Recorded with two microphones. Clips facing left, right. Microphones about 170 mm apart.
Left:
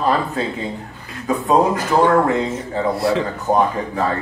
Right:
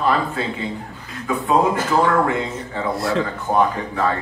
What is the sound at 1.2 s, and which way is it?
A man's voice, 40° left (ahead or behind).